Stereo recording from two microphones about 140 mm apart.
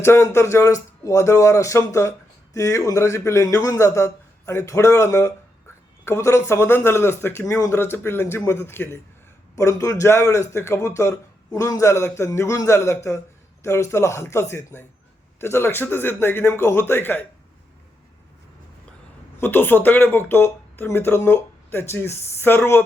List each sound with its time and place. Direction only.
0.0 s speech: 20° left (ahead or behind)
19.4 s speech: 15° left (ahead or behind)